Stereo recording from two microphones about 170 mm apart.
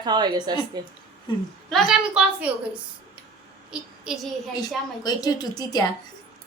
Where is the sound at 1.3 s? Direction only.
30° left (ahead or behind).